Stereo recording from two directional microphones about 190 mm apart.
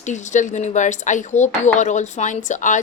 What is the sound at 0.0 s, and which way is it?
A woman's voice, 40° left (ahead or behind).